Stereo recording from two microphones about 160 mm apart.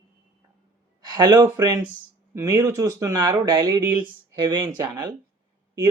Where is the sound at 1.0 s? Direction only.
25° right (ahead or behind).